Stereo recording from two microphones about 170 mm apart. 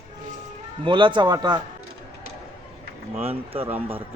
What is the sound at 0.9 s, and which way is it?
Speech, 30° right (ahead or behind).